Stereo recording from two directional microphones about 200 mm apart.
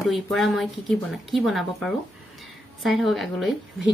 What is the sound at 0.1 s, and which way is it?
A woman's voice, centre (ahead or behind).